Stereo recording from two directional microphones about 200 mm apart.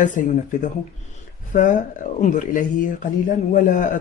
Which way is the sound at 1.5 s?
40° left (ahead or behind).